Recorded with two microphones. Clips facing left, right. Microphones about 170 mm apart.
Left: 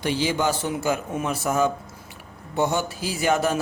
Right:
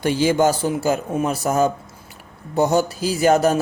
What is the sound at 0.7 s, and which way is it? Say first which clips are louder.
A man's voice: right 4 dB; 30° right (ahead or behind).